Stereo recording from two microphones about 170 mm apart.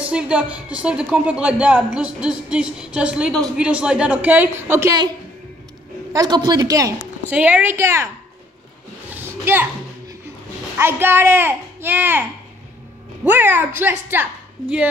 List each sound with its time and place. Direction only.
0.0 s a woman's voice: 5° right (ahead or behind)
6.1 s a man's voice: 25° right (ahead or behind)
7.2 s a woman's voice: 10° right (ahead or behind)
9.1 s a sound: 10° right (ahead or behind)
10.8 s a woman's voice: 15° right (ahead or behind)